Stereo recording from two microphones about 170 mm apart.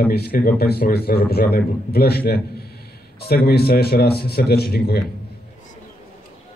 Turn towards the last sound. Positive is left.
turn(degrees=65)  # may be behind; listen again after turning